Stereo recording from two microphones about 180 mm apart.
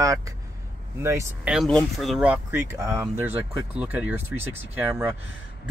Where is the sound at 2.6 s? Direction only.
15° right (ahead or behind).